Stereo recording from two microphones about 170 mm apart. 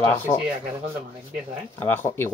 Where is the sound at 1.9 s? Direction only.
15° left (ahead or behind).